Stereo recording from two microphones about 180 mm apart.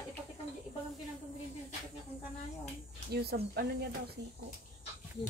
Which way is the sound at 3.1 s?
60° right (ahead or behind).